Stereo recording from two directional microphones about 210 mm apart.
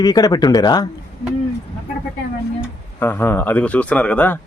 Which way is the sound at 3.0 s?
10° left (ahead or behind).